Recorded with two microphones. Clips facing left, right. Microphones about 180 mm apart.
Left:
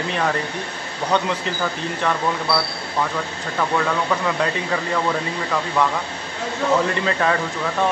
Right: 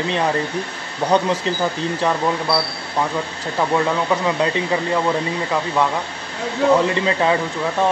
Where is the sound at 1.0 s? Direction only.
30° right (ahead or behind).